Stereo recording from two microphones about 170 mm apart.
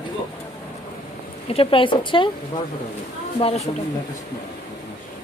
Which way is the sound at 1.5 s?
35° left (ahead or behind).